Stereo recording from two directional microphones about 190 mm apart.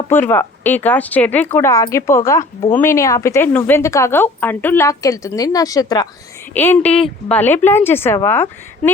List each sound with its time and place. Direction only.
0.1 s a woman's voice: 10° left (ahead or behind)
6.5 s a woman's voice: 10° left (ahead or behind)